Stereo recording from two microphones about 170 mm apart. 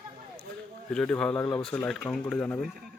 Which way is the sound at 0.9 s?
5° left (ahead or behind).